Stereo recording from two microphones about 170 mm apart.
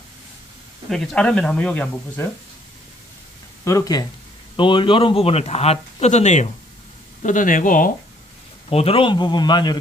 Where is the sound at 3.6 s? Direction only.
20° left (ahead or behind); by 7.9 s 55° left (ahead or behind).